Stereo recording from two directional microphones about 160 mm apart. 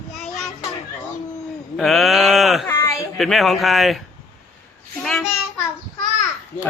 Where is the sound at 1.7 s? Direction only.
Centre (ahead or behind).